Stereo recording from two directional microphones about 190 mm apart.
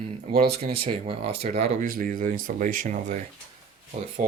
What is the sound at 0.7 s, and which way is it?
Speech, 30° right (ahead or behind).